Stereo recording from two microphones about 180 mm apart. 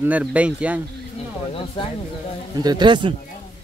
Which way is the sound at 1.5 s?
30° left (ahead or behind).